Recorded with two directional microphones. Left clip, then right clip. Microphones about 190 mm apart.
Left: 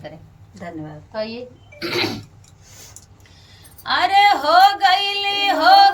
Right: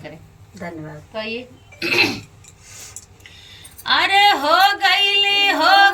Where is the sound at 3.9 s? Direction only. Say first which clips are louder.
Even; 25° left (ahead or behind).